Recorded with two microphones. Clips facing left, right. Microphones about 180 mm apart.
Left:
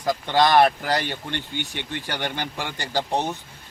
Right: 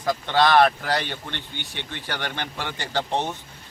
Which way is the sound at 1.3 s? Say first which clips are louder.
Left 5 dB; 50° left (ahead or behind).